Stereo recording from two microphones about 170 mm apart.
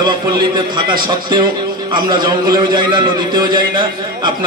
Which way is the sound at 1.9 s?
25° right (ahead or behind).